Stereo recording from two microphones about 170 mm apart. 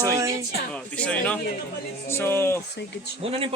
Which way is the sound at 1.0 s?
5° left (ahead or behind).